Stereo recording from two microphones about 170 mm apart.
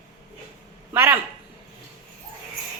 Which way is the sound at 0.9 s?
15° right (ahead or behind).